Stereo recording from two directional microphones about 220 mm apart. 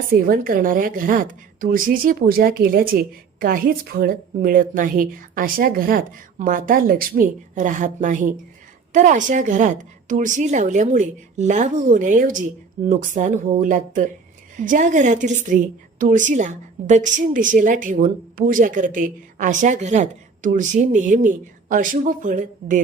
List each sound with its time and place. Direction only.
0.1 s a woman's voice: 40° right (ahead or behind)